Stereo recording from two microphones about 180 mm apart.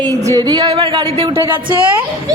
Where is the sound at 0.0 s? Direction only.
20° right (ahead or behind).